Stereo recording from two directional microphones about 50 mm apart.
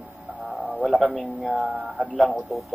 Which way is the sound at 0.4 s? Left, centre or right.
Centre.